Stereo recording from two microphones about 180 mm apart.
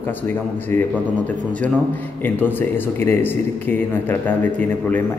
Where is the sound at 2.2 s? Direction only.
10° left (ahead or behind).